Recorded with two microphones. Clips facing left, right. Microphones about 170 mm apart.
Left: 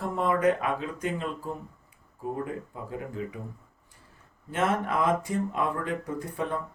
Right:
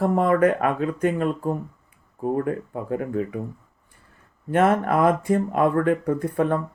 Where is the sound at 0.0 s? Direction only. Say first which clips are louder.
Right 6 dB; 55° right (ahead or behind).